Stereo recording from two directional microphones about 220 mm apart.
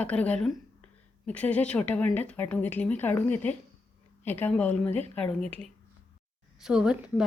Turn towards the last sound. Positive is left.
turn(degrees=-5)  # may be behind; listen again after turning